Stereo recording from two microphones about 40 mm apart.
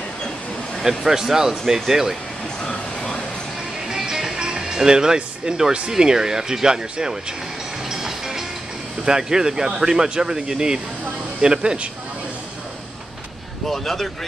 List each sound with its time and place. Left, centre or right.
0.8 s speech: centre
3.9 s speech: centre
7.9 s music: centre
9.0 s a man's voice: centre
13.7 s speech: centre